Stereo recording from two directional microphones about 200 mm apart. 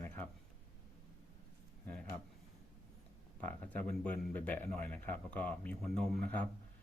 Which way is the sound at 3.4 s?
10° left (ahead or behind).